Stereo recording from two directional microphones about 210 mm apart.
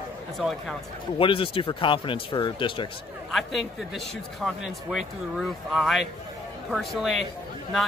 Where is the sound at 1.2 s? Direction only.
25° left (ahead or behind).